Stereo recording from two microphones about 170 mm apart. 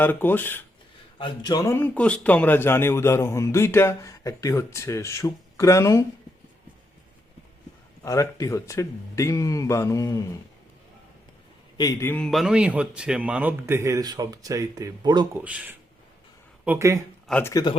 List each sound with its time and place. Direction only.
0.0 s a man's voice: 10° left (ahead or behind)
1.2 s a man's voice: 25° left (ahead or behind)
8.0 s a man's voice: 20° left (ahead or behind)
11.8 s a man's voice: 20° left (ahead or behind); by 15.3 s 25° right (ahead or behind)
15.4 s a man's voice: 10° right (ahead or behind)
17.2 s speech: 5° left (ahead or behind)
17.5 s speech: 25° left (ahead or behind)